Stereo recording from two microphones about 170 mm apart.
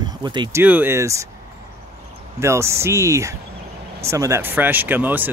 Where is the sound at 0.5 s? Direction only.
10° right (ahead or behind).